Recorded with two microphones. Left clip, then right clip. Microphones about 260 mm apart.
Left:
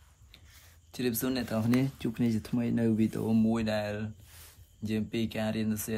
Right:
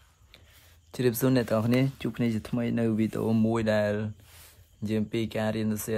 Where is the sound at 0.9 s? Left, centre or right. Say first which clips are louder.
Right 7 dB; right.